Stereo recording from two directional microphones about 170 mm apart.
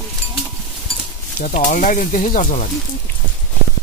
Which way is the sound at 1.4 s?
50° left (ahead or behind).